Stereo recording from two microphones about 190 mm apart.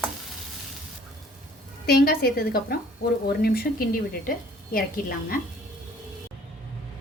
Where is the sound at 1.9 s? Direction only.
55° left (ahead or behind).